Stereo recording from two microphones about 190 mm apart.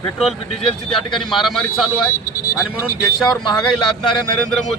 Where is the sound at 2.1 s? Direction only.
15° left (ahead or behind).